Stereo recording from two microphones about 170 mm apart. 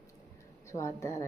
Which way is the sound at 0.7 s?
15° left (ahead or behind).